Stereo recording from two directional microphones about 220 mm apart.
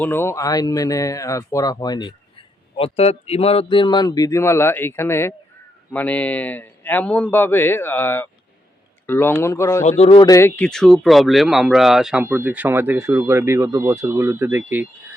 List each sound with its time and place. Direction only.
0.0 s speech: 10° left (ahead or behind); by 14.6 s 10° right (ahead or behind)